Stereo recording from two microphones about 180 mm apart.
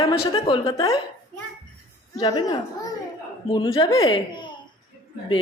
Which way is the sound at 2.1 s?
20° left (ahead or behind).